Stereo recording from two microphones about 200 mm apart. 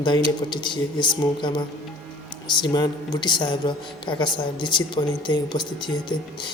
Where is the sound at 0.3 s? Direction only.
25° left (ahead or behind).